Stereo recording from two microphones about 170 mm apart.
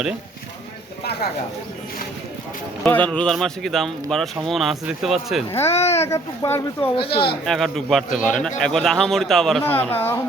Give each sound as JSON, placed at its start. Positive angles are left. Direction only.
{"t": 2.8, "sound": "speech", "side_deg": 10}
{"t": 5.5, "sound": "speech", "side_deg": 15}
{"t": 5.7, "sound": "a child's voice", "side_deg": 40}
{"t": 6.0, "sound": "speech", "side_deg": 15}
{"t": 6.9, "sound": "speech", "side_deg": 30}
{"t": 7.4, "sound": "speech", "side_deg": 0}